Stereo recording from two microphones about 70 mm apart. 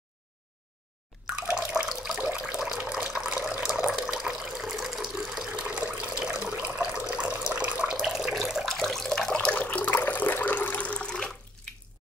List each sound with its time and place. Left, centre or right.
1.4 s water: centre
5.5 s water: centre
7.1 s water tap: centre